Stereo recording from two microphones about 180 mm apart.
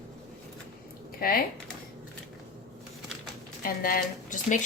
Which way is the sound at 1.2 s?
55° left (ahead or behind).